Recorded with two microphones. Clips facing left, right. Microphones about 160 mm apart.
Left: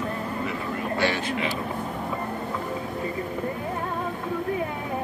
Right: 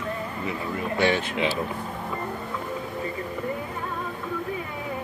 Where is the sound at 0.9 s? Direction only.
20° right (ahead or behind).